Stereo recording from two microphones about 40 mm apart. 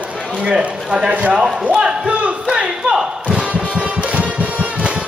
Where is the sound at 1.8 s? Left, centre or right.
Right.